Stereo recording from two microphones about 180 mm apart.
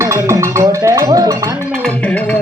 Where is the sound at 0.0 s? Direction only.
15° right (ahead or behind).